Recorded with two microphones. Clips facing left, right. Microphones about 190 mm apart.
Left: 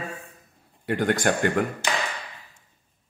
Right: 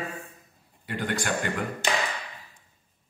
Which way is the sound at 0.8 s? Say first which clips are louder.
Left 7 dB; 50° left (ahead or behind).